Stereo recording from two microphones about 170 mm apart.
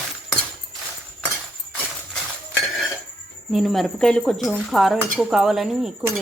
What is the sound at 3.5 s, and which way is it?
Speech, centre (ahead or behind).